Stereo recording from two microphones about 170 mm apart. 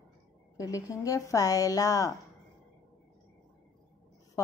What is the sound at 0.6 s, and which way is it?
A woman's voice, 20° left (ahead or behind).